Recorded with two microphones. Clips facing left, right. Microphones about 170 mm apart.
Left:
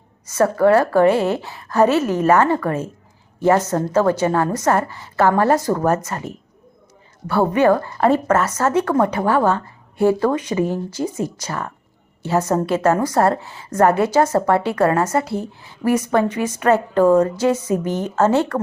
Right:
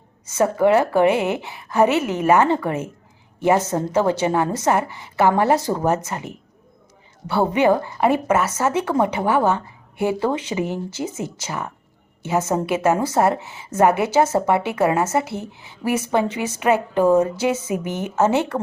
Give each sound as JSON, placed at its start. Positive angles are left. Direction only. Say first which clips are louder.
{"t": 0.3, "sound": "a woman's voice", "louder": "left 2 dB", "side_deg": -20}
{"t": 8.5, "sound": "a woman's voice", "louder": "left 3 dB", "side_deg": -20}
{"t": 8.8, "sound": "a woman's voice", "louder": "left 3 dB", "side_deg": -5}
{"t": 9.1, "sound": "a woman's voice", "louder": "left 1 dB", "side_deg": -20}
{"t": 12.4, "sound": "a woman's voice", "louder": "left 2 dB", "side_deg": -5}
{"t": 12.6, "sound": "a woman's voice", "louder": "left 2 dB", "side_deg": -20}
{"t": 13.7, "sound": "a woman's voice", "louder": "left 1 dB", "side_deg": -5}
{"t": 14.0, "sound": "a woman's voice", "louder": "left 2 dB", "side_deg": -20}